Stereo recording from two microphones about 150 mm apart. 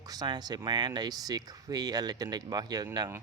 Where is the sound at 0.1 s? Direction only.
30° right (ahead or behind).